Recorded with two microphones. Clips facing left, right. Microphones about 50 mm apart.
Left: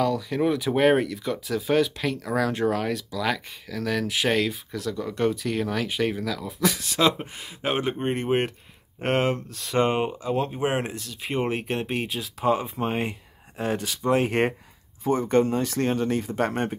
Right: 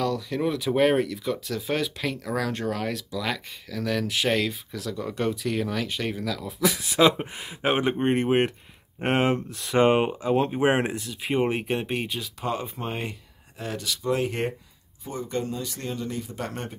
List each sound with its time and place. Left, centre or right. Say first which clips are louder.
0.0 s speech: left 3 dB; centre; by 10.9 s right
10.9 s speech: right 3 dB; centre
13.6 s speech: left 4 dB; left